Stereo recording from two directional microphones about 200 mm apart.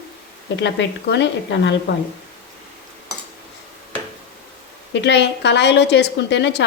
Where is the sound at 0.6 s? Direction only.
60° left (ahead or behind).